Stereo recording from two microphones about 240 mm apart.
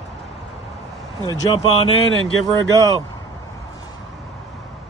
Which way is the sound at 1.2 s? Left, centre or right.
Left.